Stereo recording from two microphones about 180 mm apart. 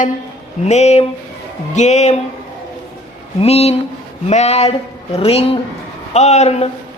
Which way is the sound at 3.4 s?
35° left (ahead or behind).